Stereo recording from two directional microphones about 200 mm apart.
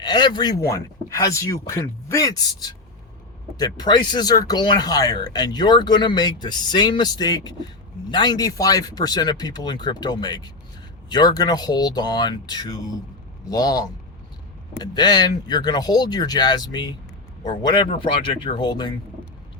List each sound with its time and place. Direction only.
0.0 s speech: 20° left (ahead or behind)